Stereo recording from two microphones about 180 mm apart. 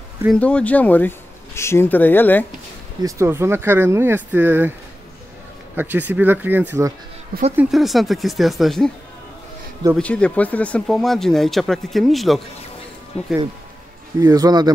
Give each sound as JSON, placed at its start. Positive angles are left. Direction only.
{"t": 0.3, "sound": "speech", "side_deg": 5}
{"t": 3.0, "sound": "speech", "side_deg": -15}
{"t": 5.8, "sound": "speech", "side_deg": -10}
{"t": 7.3, "sound": "speech", "side_deg": -55}
{"t": 7.7, "sound": "speech", "side_deg": 0}
{"t": 9.9, "sound": "speech", "side_deg": 5}
{"t": 14.2, "sound": "speech", "side_deg": -20}